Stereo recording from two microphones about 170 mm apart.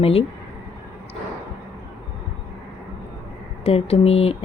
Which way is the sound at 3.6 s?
35° left (ahead or behind).